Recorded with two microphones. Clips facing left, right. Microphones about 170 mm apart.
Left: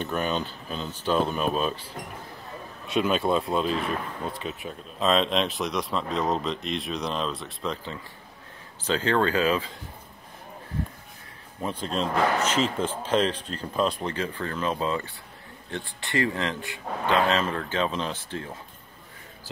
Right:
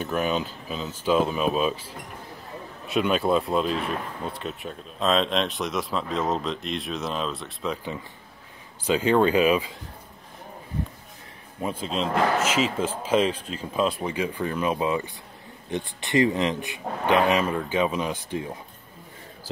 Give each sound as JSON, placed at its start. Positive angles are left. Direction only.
{"t": 0.0, "sound": "speech", "side_deg": -5}
{"t": 2.9, "sound": "speech", "side_deg": 0}
{"t": 11.6, "sound": "speech", "side_deg": -5}